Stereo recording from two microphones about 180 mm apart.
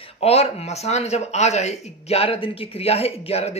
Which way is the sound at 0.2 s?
35° left (ahead or behind).